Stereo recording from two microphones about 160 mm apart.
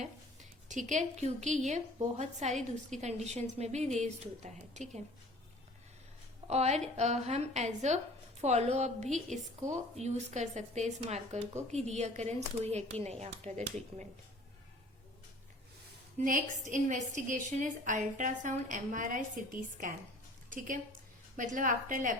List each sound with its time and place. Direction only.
0.7 s speech: 50° right (ahead or behind)
6.5 s speech: 45° right (ahead or behind)
16.1 s speech: 55° right (ahead or behind)
21.3 s a woman's voice: 55° right (ahead or behind)